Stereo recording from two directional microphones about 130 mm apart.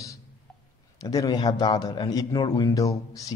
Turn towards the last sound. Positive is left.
turn(degrees=25)  # may be behind; listen again after turning